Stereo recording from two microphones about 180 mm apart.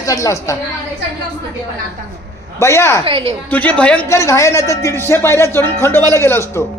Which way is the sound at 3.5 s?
10° left (ahead or behind).